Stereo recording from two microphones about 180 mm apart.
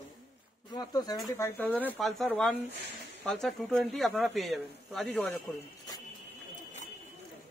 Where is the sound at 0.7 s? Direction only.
20° left (ahead or behind).